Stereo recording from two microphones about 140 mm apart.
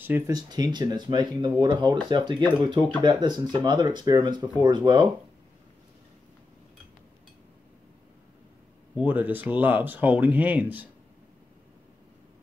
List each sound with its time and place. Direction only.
0.3 s speech: 25° right (ahead or behind)
8.9 s speech: 10° right (ahead or behind)